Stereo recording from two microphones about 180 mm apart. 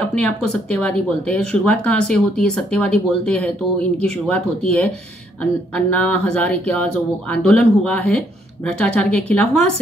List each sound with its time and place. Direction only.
0.1 s speech: 5° left (ahead or behind)